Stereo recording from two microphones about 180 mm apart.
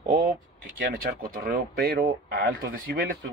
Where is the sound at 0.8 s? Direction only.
55° right (ahead or behind).